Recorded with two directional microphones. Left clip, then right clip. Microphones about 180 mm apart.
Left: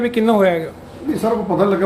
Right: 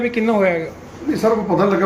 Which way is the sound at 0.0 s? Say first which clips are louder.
Left 2 dB; 15° left (ahead or behind).